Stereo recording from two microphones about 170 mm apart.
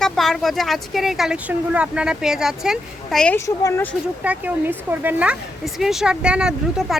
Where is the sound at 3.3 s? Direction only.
15° left (ahead or behind).